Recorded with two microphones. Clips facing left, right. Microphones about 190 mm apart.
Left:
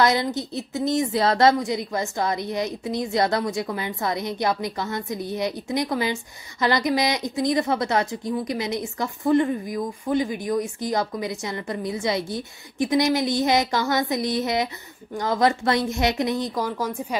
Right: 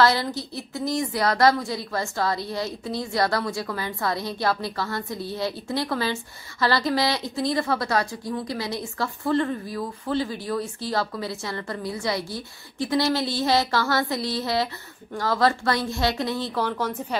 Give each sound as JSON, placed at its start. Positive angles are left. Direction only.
{"t": 0.0, "sound": "a woman's voice", "side_deg": 20}